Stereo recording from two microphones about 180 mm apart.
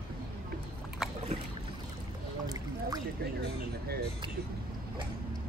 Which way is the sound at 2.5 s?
20° right (ahead or behind).